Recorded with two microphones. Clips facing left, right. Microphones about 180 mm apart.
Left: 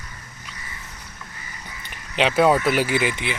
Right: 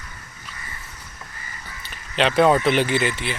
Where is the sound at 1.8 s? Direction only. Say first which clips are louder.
Even; 10° left (ahead or behind).